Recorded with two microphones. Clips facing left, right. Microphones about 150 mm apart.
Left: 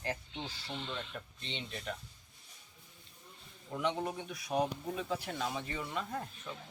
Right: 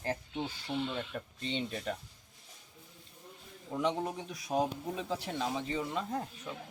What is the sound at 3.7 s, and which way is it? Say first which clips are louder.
Speech: right 3 dB; 15° right (ahead or behind).